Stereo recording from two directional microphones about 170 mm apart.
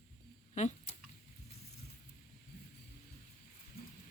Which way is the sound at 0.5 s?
45° left (ahead or behind).